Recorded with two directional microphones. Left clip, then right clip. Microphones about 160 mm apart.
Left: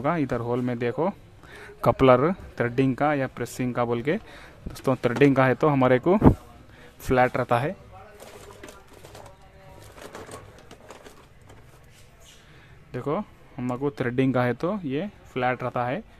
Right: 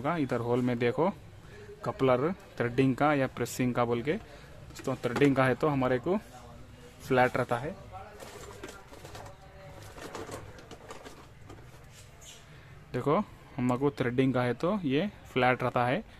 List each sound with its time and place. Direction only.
0.0 s speech: 15° left (ahead or behind)
1.8 s speech: 40° left (ahead or behind); by 4.2 s 20° left (ahead or behind)
4.8 s speech: 30° left (ahead or behind)
7.1 s speech: 20° left (ahead or behind)
12.9 s speech: centre (ahead or behind)
13.9 s speech: 15° left (ahead or behind)
14.7 s speech: centre (ahead or behind)